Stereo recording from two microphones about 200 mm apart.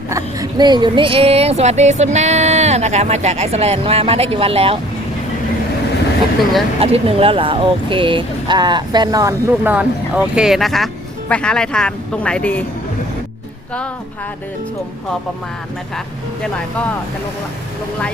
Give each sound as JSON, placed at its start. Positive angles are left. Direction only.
{"t": 0.1, "sound": "speech", "side_deg": -15}
{"t": 6.7, "sound": "speech", "side_deg": -30}